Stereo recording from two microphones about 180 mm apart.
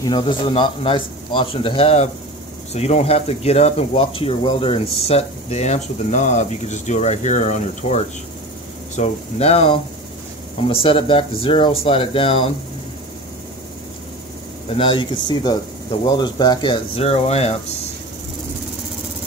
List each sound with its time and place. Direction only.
0.0 s speech: 25° left (ahead or behind)
14.7 s speech: 30° left (ahead or behind)